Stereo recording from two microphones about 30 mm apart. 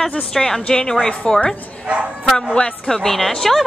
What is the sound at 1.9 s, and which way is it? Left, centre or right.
Speech, right.